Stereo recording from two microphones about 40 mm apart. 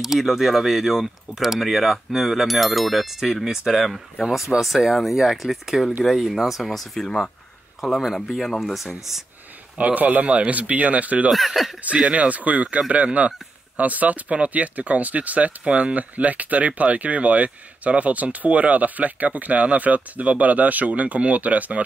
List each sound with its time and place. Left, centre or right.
0.0 s speech: centre
8.7 s speech: centre
9.8 s a man's voice: right
11.3 s speech: centre
11.8 s speech: right